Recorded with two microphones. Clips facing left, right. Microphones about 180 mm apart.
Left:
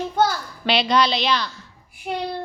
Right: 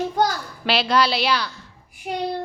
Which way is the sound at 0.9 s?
10° right (ahead or behind).